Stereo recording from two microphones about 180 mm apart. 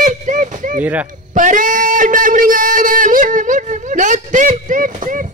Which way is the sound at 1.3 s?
45° right (ahead or behind).